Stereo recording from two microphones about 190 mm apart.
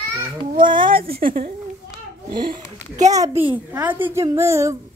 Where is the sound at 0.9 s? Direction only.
50° right (ahead or behind).